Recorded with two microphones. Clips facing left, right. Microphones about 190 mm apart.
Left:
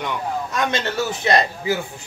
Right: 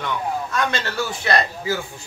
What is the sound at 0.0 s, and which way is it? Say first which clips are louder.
A man's voice: even; 20° left (ahead or behind).